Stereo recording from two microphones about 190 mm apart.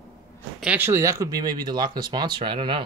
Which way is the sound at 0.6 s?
10° right (ahead or behind).